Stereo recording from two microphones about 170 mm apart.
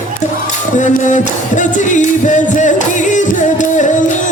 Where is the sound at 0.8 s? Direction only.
45° left (ahead or behind).